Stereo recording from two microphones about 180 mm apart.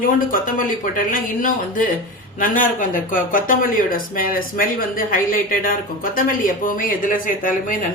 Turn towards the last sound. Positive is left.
turn(degrees=50)  # may be behind; listen again after turning